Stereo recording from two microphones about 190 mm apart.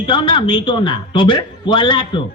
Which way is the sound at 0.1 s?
25° left (ahead or behind).